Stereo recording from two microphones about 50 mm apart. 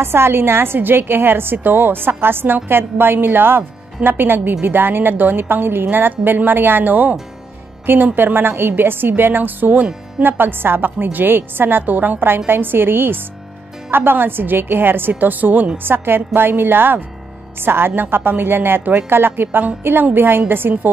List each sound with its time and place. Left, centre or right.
0.0 s a woman's voice: right